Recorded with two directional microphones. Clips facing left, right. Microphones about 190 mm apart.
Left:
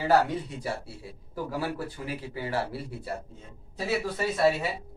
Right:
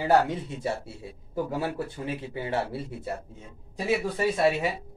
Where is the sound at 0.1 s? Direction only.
25° right (ahead or behind).